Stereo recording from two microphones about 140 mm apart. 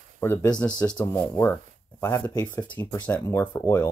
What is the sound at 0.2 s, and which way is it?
Speech, 15° left (ahead or behind).